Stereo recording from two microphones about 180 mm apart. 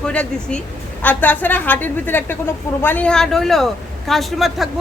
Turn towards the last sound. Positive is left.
turn(degrees=0)  # may be behind; listen again after turning